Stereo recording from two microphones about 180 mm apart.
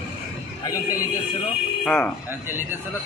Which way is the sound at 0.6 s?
20° left (ahead or behind).